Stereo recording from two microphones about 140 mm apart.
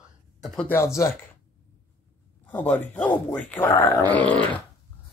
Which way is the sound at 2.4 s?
10° left (ahead or behind).